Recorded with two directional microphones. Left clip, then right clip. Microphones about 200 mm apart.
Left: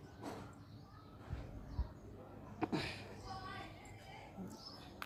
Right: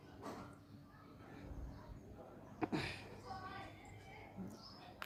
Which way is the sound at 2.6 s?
5° left (ahead or behind).